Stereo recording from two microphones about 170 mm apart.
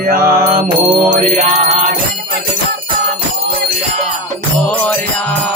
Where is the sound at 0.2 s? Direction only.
20° right (ahead or behind).